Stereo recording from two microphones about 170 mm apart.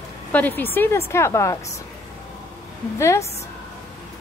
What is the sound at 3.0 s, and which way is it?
Speech, 15° left (ahead or behind).